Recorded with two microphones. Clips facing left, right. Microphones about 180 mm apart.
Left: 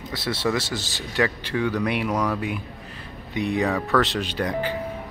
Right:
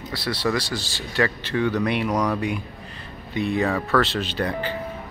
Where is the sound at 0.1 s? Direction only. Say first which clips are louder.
Even; 25° left (ahead or behind).